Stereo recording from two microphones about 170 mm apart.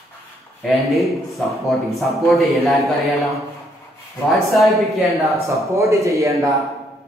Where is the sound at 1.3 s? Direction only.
Centre (ahead or behind).